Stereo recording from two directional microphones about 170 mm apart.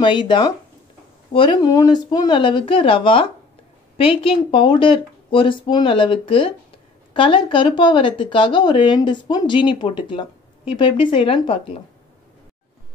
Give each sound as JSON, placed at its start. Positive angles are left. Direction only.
{"t": 0.0, "sound": "a woman's voice", "side_deg": 30}